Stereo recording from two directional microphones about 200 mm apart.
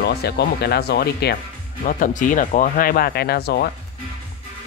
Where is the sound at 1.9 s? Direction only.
40° left (ahead or behind).